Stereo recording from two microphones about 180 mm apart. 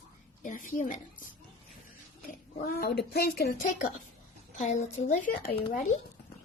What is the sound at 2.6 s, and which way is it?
Speech, 55° left (ahead or behind).